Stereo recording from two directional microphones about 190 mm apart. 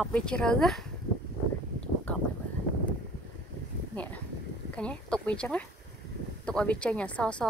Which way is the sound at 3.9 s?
5° left (ahead or behind).